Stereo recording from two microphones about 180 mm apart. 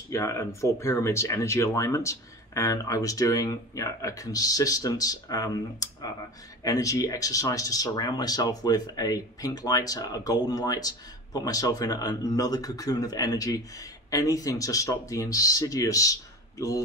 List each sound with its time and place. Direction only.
0.1 s speech: 15° left (ahead or behind)